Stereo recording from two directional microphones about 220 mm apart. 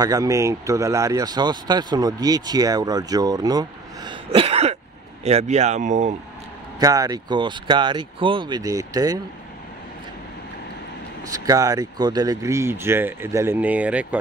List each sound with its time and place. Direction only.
0.0 s speech: 15° right (ahead or behind); by 6.1 s 35° right (ahead or behind)
6.8 s speech: 15° right (ahead or behind)
11.3 s speech: 15° right (ahead or behind)